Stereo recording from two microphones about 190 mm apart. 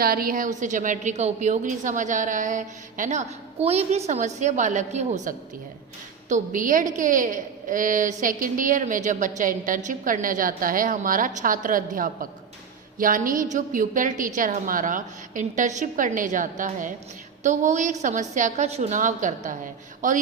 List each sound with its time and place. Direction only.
0.0 s a woman's voice: 50° right (ahead or behind)